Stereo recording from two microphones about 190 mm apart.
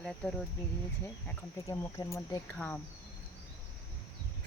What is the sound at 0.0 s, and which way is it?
Speech, 5° left (ahead or behind).